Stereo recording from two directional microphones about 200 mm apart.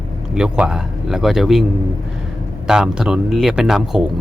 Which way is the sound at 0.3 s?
5° right (ahead or behind).